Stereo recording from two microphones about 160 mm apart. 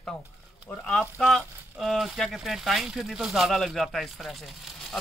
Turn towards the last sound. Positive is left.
turn(degrees=0)  # may be behind; listen again after turning